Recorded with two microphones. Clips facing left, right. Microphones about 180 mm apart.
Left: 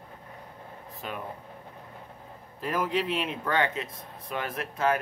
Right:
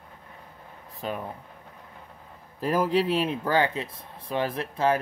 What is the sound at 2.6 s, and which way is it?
Speech, 35° right (ahead or behind).